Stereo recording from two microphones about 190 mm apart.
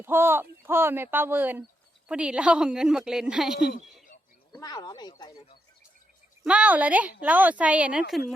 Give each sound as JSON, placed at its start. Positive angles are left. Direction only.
{"t": 0.0, "sound": "a woman's voice", "side_deg": -10}
{"t": 4.5, "sound": "speech", "side_deg": 20}
{"t": 6.4, "sound": "speech", "side_deg": -5}